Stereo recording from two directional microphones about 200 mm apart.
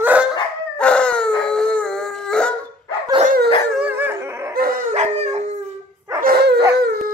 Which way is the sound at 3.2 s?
45° right (ahead or behind).